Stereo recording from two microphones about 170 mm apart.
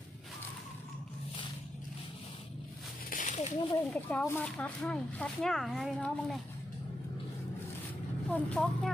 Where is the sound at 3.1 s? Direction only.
45° left (ahead or behind).